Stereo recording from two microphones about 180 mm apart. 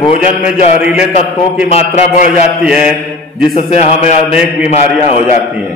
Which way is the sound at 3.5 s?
35° left (ahead or behind).